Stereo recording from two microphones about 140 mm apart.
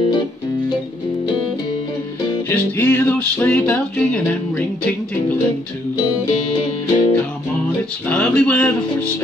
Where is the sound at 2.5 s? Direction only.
15° left (ahead or behind).